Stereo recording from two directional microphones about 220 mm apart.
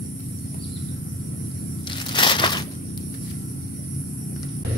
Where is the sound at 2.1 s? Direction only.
20° left (ahead or behind).